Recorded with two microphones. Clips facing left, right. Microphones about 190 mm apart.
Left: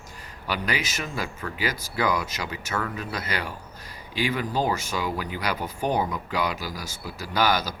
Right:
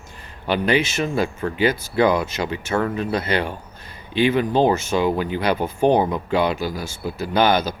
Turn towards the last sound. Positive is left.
turn(degrees=-25)  # may be behind; listen again after turning